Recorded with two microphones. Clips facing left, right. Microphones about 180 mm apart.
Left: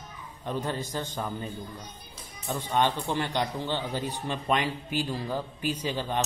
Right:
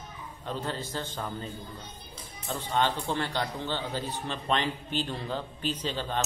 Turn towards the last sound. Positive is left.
turn(degrees=15)  # may be behind; listen again after turning